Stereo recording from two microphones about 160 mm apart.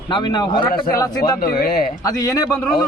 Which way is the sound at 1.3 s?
65° left (ahead or behind).